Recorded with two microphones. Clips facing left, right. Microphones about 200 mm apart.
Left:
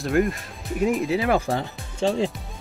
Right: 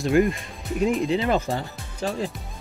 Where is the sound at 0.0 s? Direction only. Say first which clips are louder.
Right 2 dB; centre (ahead or behind).